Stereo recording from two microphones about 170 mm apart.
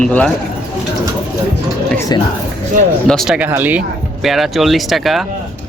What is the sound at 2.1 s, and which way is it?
Speech, 25° left (ahead or behind).